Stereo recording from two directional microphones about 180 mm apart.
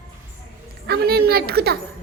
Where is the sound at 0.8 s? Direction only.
60° right (ahead or behind).